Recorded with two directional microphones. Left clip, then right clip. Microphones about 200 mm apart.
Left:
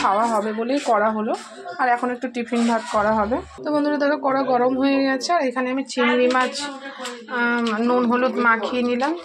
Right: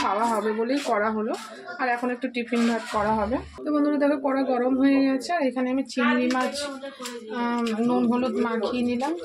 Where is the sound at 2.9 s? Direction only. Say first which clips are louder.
Left 6 dB; 20° left (ahead or behind).